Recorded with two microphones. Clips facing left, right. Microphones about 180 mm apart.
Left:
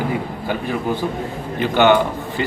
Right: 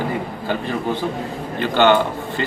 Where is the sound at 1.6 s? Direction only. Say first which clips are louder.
Left 1 dB; 15° left (ahead or behind).